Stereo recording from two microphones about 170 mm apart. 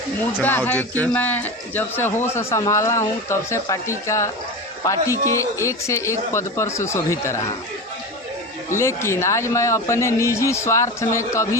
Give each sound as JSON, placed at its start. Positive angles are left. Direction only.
{"t": 0.4, "sound": "speech", "side_deg": 10}
{"t": 8.7, "sound": "speech", "side_deg": 15}